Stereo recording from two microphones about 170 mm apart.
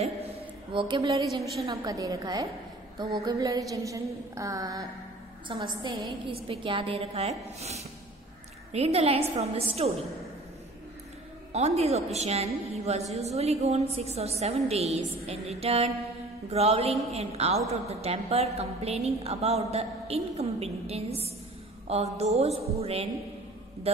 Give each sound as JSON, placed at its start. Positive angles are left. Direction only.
{"t": 0.7, "sound": "a woman's voice", "side_deg": -30}
{"t": 5.5, "sound": "a woman's voice", "side_deg": -30}
{"t": 11.5, "sound": "a woman's voice", "side_deg": -40}